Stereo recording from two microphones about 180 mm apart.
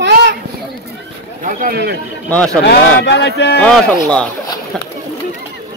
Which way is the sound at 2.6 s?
70° left (ahead or behind).